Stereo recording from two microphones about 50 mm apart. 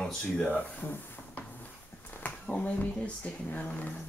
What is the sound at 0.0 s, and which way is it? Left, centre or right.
Speech, centre.